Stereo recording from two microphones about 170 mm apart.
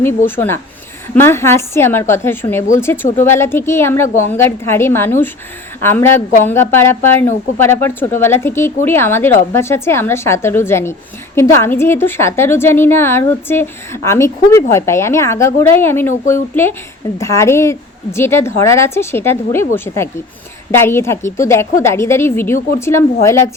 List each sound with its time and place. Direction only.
0.3 s a woman's voice: 15° left (ahead or behind)